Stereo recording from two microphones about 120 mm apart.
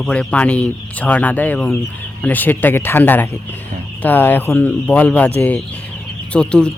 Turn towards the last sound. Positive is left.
turn(degrees=10)  # may be behind; listen again after turning